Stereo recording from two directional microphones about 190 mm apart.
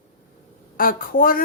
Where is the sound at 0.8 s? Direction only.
50° left (ahead or behind).